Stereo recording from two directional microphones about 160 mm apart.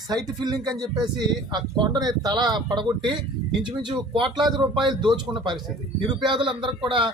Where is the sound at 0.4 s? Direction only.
25° right (ahead or behind).